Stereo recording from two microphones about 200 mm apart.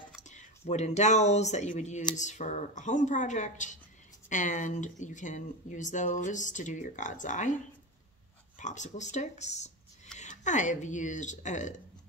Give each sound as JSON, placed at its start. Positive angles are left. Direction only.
{"t": 0.3, "sound": "speech", "side_deg": 35}
{"t": 8.5, "sound": "speech", "side_deg": 35}